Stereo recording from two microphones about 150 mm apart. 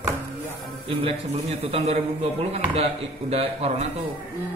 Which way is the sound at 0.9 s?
40° right (ahead or behind).